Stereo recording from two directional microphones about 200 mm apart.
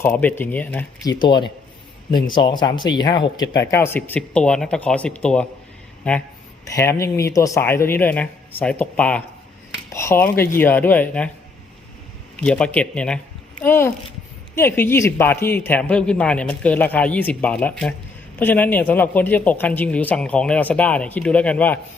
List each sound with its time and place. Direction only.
0.0 s speech: 10° left (ahead or behind)
1.2 s a man's voice: 20° left (ahead or behind)
12.4 s speech: 5° left (ahead or behind)